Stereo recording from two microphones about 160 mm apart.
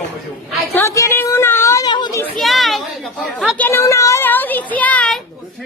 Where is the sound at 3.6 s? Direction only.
15° left (ahead or behind).